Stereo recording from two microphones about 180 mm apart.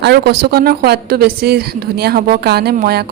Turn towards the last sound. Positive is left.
turn(degrees=-60)  # may be behind; listen again after turning